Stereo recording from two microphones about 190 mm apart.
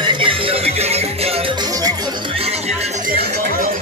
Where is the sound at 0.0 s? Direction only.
25° right (ahead or behind).